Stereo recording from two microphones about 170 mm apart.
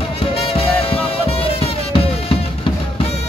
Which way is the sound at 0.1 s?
35° left (ahead or behind).